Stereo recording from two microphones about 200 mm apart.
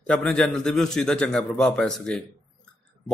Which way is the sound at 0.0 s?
5° left (ahead or behind).